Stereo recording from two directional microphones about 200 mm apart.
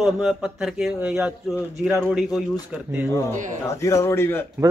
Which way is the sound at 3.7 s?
15° left (ahead or behind).